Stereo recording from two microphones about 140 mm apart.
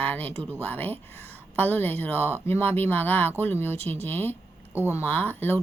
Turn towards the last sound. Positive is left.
turn(degrees=15)  # may be behind; listen again after turning